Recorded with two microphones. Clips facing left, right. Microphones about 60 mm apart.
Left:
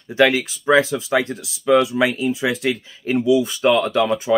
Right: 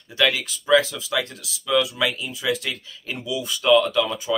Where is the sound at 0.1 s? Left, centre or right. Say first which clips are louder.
Left 6 dB; left.